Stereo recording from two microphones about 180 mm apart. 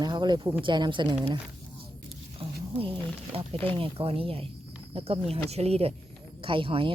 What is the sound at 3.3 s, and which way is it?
Speech, 30° right (ahead or behind).